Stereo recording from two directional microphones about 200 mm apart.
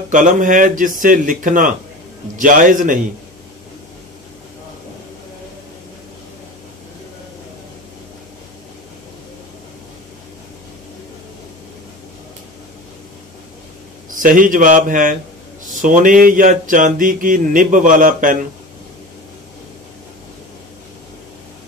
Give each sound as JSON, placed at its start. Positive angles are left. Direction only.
{"t": 0.1, "sound": "speech", "side_deg": -40}
{"t": 14.1, "sound": "speech", "side_deg": -40}